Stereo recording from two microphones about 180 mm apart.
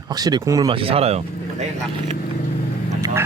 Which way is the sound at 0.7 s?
30° right (ahead or behind).